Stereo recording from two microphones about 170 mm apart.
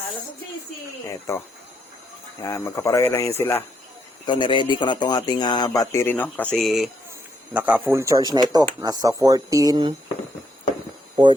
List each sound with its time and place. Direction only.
1.3 s speech: 15° left (ahead or behind)
4.3 s speech: 30° left (ahead or behind); by 9.9 s 25° right (ahead or behind)